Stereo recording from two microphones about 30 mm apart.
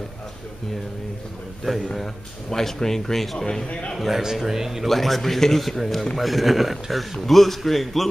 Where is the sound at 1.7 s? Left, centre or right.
Centre.